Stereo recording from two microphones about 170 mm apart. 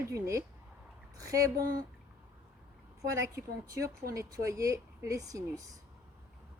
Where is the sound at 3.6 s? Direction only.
20° right (ahead or behind).